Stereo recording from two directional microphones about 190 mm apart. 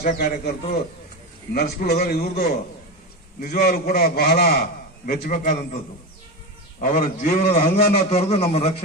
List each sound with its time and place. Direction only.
0.0 s a man's voice: 45° left (ahead or behind)
3.3 s a man's voice: 55° left (ahead or behind)
6.8 s a man's voice: 40° left (ahead or behind)